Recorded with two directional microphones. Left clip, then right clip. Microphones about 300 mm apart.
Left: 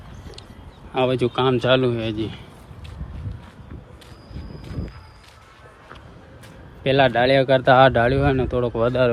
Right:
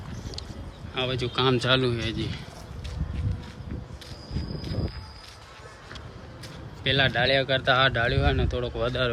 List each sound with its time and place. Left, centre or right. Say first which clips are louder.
0.9 s speech: left 7 dB; centre
6.8 s speech: left 6 dB; centre